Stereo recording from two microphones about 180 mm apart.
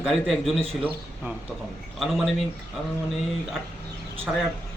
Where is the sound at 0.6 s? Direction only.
30° right (ahead or behind).